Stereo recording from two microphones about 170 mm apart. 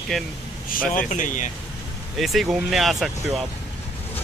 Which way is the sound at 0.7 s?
50° left (ahead or behind).